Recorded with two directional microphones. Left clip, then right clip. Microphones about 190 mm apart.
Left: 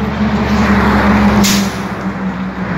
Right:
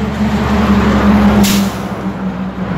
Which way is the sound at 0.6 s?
55° right (ahead or behind).